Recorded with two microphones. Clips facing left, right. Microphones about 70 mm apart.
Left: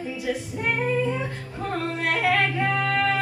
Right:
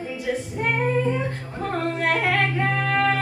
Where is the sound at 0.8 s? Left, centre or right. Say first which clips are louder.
Right 1 dB; right.